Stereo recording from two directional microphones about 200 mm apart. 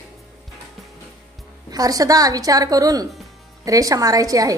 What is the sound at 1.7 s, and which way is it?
A woman's voice, 20° right (ahead or behind).